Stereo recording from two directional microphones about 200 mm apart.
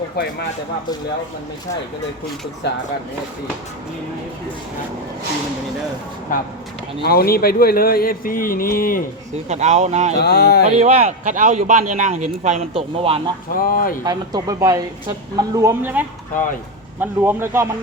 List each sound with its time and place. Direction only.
0.2 s speech: 55° left (ahead or behind)
2.6 s speech: 60° left (ahead or behind)
7.0 s speech: 50° left (ahead or behind)
9.5 s speech: 35° right (ahead or behind)
10.2 s speech: 55° left (ahead or behind)
10.8 s speech: 35° right (ahead or behind)
13.6 s speech: 45° left (ahead or behind)
14.0 s speech: 20° right (ahead or behind)